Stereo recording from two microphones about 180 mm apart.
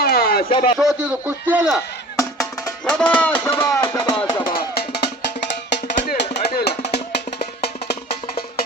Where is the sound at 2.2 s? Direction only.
15° left (ahead or behind).